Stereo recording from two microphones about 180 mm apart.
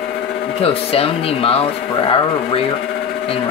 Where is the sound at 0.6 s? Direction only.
30° left (ahead or behind).